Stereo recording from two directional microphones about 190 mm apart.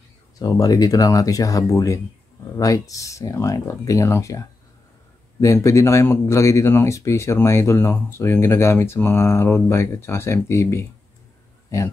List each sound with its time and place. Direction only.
0.4 s speech: 20° left (ahead or behind)